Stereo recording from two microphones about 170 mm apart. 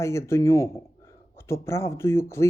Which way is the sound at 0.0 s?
15° left (ahead or behind).